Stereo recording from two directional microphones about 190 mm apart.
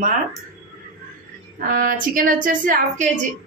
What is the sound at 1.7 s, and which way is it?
Speech, 45° right (ahead or behind).